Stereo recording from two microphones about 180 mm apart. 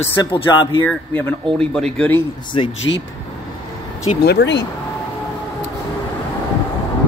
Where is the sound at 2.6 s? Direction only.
35° left (ahead or behind).